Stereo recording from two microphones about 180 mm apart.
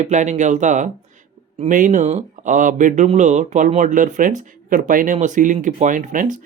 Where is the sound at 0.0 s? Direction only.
40° right (ahead or behind).